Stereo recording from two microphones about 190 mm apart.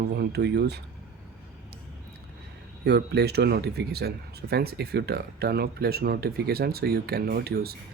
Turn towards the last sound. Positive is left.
turn(degrees=-55)  # may be behind; listen again after turning